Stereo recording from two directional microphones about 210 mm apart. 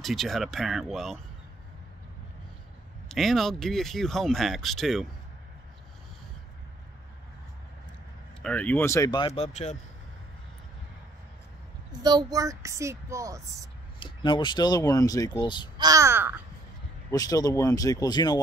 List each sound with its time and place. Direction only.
0.0 s speech: centre (ahead or behind)
3.1 s speech: centre (ahead or behind)
8.4 s speech: 5° left (ahead or behind); by 9.8 s 35° left (ahead or behind)
12.0 s speech: 20° right (ahead or behind)
13.9 s speech: 25° left (ahead or behind)
15.8 s speech: 15° right (ahead or behind)
17.1 s speech: 15° left (ahead or behind)